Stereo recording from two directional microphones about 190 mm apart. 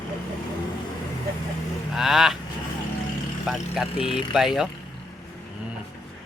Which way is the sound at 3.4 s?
5° right (ahead or behind).